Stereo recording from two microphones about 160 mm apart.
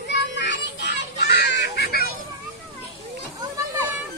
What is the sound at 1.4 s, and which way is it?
Honk, 90° left.